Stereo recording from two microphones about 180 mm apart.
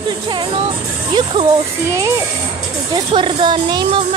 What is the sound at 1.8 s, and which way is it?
A child's voice, 15° right (ahead or behind).